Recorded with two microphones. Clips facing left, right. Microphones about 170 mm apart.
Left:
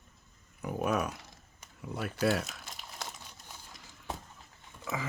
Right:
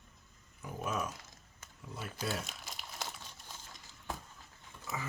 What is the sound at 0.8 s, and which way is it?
Speech, 65° left (ahead or behind).